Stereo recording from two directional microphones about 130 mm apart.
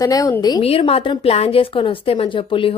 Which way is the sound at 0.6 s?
50° left (ahead or behind).